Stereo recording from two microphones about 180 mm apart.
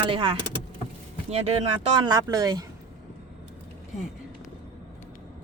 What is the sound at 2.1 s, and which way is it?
Speech, 20° right (ahead or behind).